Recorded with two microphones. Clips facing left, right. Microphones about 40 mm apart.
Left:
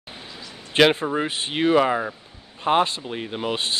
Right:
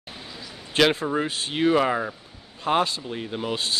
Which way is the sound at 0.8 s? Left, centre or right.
Left.